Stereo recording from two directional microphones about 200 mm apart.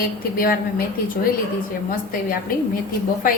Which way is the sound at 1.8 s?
45° left (ahead or behind).